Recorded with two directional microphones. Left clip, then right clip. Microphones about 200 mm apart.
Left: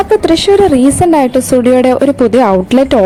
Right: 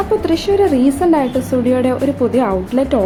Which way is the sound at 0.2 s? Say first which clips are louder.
Left 6 dB; 35° left (ahead or behind).